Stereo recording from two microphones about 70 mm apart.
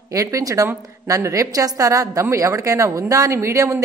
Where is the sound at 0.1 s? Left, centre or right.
Right.